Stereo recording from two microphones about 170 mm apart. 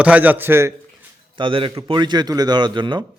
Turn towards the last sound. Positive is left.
turn(degrees=-25)  # may be behind; listen again after turning